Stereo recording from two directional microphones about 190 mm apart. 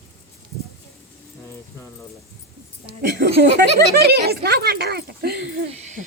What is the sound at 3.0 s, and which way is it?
Speech, 55° right (ahead or behind).